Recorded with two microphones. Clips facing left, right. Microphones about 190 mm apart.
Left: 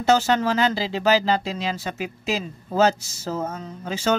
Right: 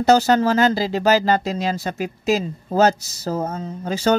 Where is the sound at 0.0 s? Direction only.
40° right (ahead or behind).